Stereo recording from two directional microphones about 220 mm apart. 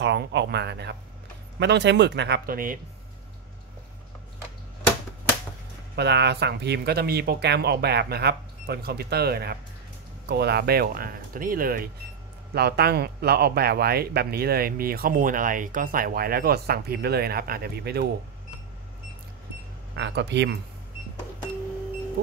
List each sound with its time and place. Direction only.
0.0 s speech: 50° right (ahead or behind)
5.9 s speech: 50° right (ahead or behind)
20.0 s speech: 50° right (ahead or behind)